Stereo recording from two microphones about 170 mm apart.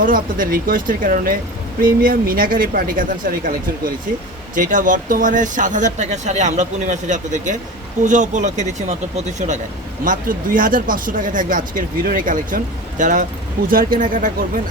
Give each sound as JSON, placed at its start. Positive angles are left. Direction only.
{"t": 0.0, "sound": "speech", "side_deg": -55}
{"t": 10.0, "sound": "speech", "side_deg": -55}